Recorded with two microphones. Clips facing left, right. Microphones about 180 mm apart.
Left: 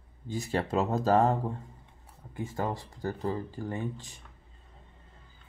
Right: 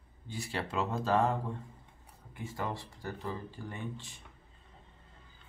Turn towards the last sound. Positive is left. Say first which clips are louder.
# left 6 dB
turn(degrees=40)  # may be behind; listen again after turning